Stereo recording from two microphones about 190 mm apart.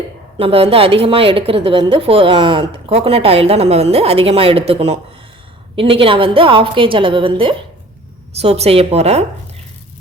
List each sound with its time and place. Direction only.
0.3 s a woman's voice: 30° right (ahead or behind)